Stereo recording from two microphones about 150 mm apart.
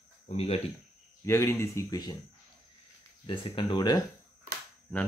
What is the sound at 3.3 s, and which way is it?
Speech, 35° left (ahead or behind).